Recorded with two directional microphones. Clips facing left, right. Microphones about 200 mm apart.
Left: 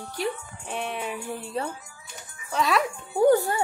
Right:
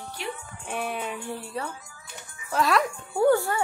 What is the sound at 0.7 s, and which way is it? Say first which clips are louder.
Speech: even; centre (ahead or behind).